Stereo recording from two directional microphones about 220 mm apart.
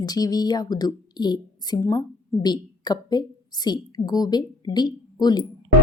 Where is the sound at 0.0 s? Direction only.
15° left (ahead or behind).